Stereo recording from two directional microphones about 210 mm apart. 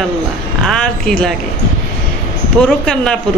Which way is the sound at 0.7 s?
5° left (ahead or behind).